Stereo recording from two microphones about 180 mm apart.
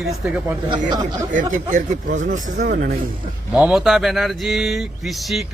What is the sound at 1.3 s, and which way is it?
Speech, 45° right (ahead or behind).